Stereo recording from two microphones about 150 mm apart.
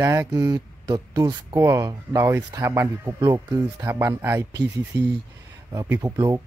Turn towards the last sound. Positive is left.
turn(degrees=-15)  # may be behind; listen again after turning